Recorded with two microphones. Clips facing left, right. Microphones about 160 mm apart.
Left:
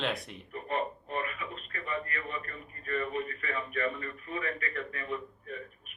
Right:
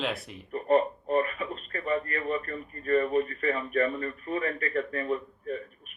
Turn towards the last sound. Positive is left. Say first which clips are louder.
# right 7 dB
turn(degrees=-40)  # may be behind; listen again after turning